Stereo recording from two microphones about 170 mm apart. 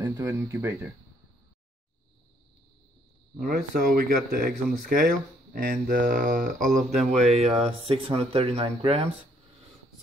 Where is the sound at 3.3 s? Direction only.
60° right (ahead or behind).